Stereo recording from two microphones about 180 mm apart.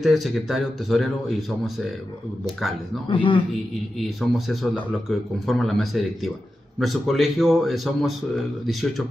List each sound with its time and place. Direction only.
0.0 s speech: centre (ahead or behind)
3.1 s a man's voice: 25° left (ahead or behind)
4.0 s speech: centre (ahead or behind)